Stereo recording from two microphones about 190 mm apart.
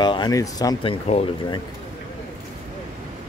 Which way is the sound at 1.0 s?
35° left (ahead or behind).